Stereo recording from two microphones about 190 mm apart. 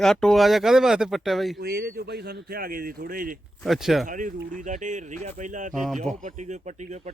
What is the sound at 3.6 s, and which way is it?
Speech, centre (ahead or behind).